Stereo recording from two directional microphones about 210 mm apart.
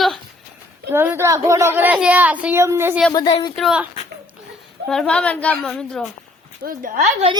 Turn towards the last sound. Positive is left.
turn(degrees=-40)  # may be behind; listen again after turning